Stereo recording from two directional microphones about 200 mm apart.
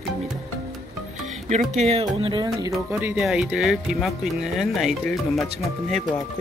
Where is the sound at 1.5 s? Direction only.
35° right (ahead or behind).